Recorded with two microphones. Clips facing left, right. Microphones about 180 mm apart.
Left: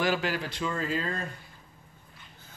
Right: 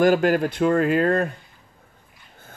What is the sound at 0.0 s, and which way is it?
Speech, 50° right (ahead or behind).